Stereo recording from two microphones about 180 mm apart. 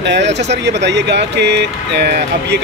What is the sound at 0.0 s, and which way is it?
Speech, 70° right (ahead or behind).